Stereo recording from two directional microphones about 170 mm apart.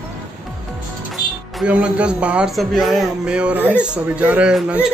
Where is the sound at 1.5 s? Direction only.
5° right (ahead or behind).